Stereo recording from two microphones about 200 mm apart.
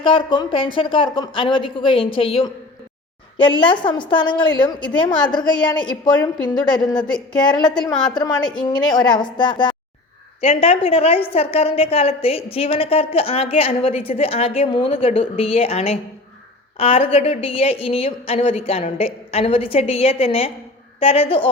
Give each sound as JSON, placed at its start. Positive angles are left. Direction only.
{"t": 0.0, "sound": "a woman's voice", "side_deg": 25}